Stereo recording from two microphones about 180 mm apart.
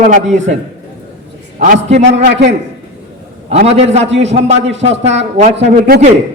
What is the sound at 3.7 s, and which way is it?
A man's voice, 35° right (ahead or behind).